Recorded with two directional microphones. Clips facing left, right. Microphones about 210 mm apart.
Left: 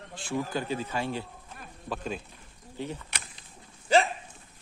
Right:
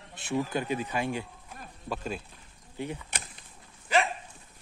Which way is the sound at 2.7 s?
10° right (ahead or behind).